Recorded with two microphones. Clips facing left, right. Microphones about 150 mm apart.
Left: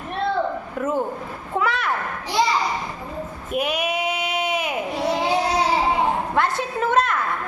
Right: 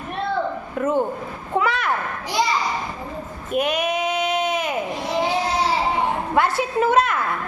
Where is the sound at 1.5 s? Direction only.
Centre (ahead or behind).